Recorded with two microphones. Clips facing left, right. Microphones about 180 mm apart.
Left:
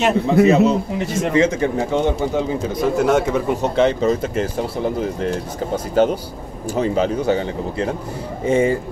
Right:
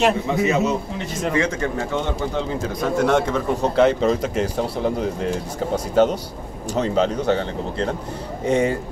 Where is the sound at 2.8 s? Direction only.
5° left (ahead or behind).